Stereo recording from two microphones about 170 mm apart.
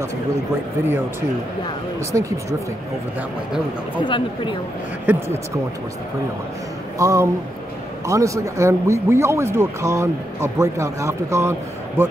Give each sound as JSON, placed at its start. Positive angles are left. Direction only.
{"t": 2.1, "sound": "speech", "side_deg": -20}
{"t": 4.0, "sound": "speech", "side_deg": 30}
{"t": 5.1, "sound": "speech", "side_deg": -10}
{"t": 7.0, "sound": "speech", "side_deg": -20}